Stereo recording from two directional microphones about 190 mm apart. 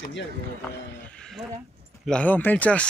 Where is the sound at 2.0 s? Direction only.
5° left (ahead or behind).